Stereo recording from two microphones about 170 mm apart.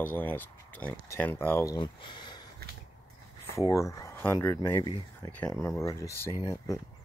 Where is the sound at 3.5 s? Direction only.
20° left (ahead or behind).